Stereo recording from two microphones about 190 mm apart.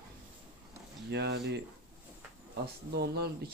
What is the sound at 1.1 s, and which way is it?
Speech, 60° right (ahead or behind).